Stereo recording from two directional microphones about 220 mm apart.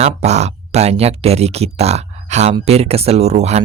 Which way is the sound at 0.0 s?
30° right (ahead or behind).